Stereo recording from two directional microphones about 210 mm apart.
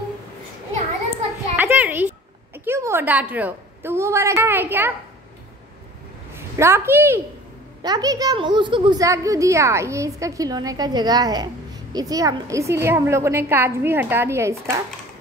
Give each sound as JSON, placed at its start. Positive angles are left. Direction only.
{"t": 1.6, "sound": "a sound", "side_deg": -10}
{"t": 2.5, "sound": "a woman's voice", "side_deg": -10}
{"t": 6.3, "sound": "a woman's voice", "side_deg": -10}